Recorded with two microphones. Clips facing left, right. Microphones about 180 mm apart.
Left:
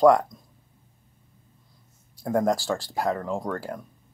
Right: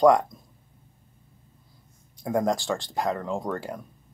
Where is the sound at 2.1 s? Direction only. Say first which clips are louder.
Left 1 dB; 5° left (ahead or behind).